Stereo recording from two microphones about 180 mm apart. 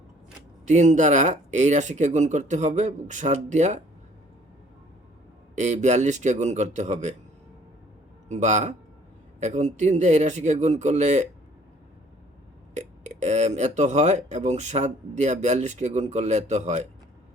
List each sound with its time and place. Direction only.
0.6 s speech: 40° right (ahead or behind)
5.5 s speech: 40° right (ahead or behind)
8.3 s speech: 40° right (ahead or behind)
12.7 s speech: 40° right (ahead or behind)